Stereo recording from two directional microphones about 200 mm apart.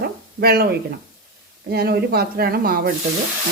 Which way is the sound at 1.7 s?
50° right (ahead or behind).